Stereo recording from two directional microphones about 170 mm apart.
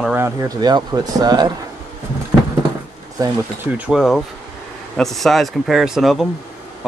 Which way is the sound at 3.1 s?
20° right (ahead or behind).